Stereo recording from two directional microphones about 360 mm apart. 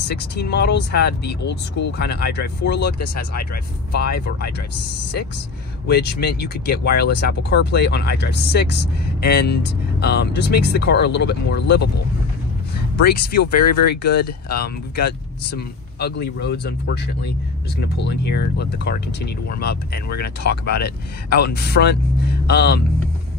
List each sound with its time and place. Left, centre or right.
0.1 s speech: left
5.9 s speech: left
12.9 s speech: left